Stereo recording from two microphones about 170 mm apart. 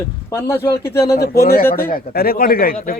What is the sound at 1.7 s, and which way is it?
Speech, 60° left (ahead or behind).